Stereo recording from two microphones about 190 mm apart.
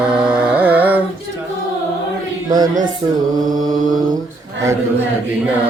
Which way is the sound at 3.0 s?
20° right (ahead or behind).